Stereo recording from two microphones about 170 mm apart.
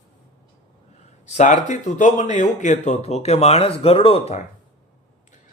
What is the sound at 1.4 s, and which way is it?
A man's voice, 45° left (ahead or behind).